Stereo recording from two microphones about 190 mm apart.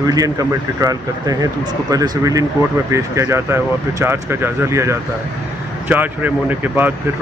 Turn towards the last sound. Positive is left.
turn(degrees=-10)  # may be behind; listen again after turning